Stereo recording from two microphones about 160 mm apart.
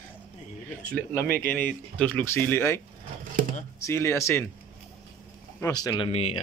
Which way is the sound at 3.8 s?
20° left (ahead or behind).